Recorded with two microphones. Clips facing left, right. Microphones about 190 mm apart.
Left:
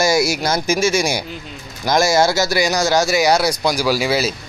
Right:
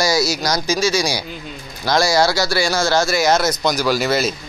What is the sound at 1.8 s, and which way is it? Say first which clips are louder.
Speech: left 1 dB; 20° left (ahead or behind).